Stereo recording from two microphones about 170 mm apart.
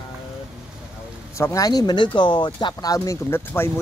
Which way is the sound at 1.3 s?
20° left (ahead or behind).